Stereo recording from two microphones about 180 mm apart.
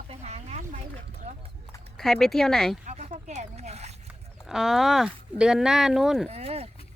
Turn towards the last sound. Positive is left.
turn(degrees=-35)  # may be behind; listen again after turning